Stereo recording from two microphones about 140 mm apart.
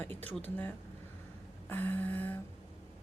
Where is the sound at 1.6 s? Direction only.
15° left (ahead or behind).